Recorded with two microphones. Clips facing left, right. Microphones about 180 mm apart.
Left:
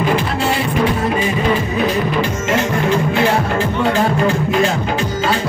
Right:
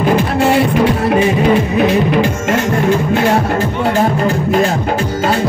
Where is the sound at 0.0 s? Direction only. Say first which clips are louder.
Right 5 dB; 55° right (ahead or behind).